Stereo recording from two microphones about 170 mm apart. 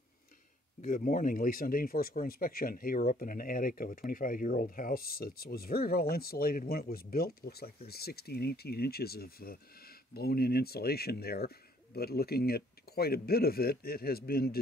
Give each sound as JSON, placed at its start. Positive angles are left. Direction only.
{"t": 0.8, "sound": "speech", "side_deg": 55}